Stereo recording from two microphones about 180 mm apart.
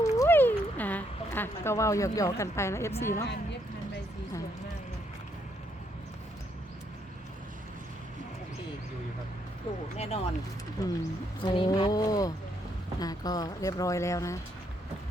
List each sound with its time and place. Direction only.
0.2 s a sound: 10° left (ahead or behind)
3.0 s speech: 15° left (ahead or behind)
10.0 s speech: 35° left (ahead or behind)
10.8 s speech: 20° left (ahead or behind)